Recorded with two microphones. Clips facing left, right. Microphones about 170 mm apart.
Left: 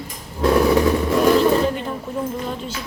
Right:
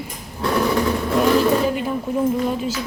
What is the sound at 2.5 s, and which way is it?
Speech, 5° right (ahead or behind).